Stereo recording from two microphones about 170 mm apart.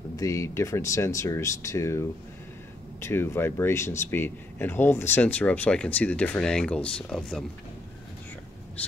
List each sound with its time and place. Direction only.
0.1 s speech: 20° left (ahead or behind)
8.8 s speech: 10° left (ahead or behind)